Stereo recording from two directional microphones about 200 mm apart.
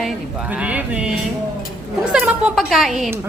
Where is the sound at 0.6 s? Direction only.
5° right (ahead or behind).